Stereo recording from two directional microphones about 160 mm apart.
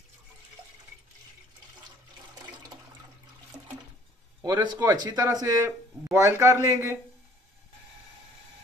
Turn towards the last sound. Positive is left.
turn(degrees=-20)  # may be behind; listen again after turning